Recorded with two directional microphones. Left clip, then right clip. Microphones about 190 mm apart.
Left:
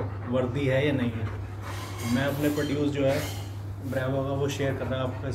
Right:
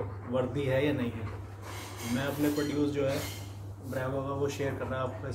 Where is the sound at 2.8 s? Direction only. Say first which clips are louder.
Left 4 dB; 20° right (ahead or behind).